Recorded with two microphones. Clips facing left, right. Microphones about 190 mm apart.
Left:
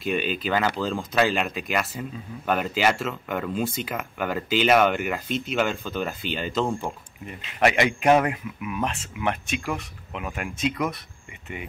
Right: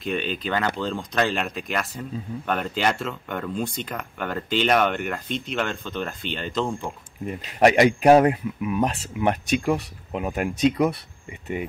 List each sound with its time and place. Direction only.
0.0 s speech: 5° left (ahead or behind)
7.2 s speech: 40° right (ahead or behind)